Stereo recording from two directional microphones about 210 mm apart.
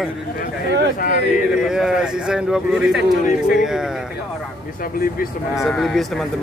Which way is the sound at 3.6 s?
Centre (ahead or behind).